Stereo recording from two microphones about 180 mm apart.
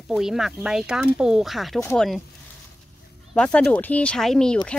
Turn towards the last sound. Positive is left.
turn(degrees=5)  # may be behind; listen again after turning